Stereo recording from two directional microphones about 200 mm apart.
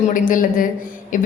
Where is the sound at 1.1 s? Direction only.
40° left (ahead or behind).